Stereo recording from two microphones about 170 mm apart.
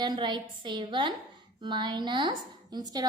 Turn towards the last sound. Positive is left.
turn(degrees=-25)  # may be behind; listen again after turning